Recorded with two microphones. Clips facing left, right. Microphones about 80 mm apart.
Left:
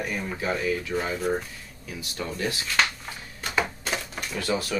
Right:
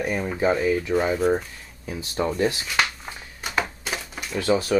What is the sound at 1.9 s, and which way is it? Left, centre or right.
Speech, right.